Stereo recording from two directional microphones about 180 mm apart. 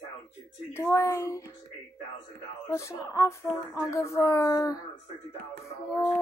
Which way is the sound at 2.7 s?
20° left (ahead or behind).